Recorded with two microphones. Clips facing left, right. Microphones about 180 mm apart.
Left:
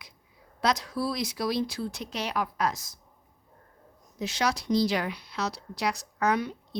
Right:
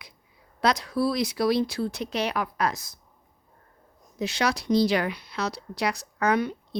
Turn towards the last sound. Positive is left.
turn(degrees=-60)  # may be behind; listen again after turning